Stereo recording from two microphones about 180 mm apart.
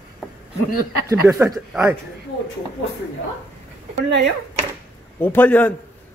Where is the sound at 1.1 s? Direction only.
20° right (ahead or behind).